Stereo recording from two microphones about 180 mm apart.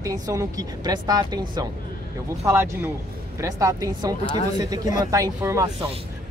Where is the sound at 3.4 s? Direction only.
20° right (ahead or behind).